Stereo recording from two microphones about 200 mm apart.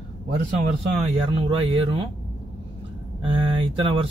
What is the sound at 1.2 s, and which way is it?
Speech, 25° right (ahead or behind).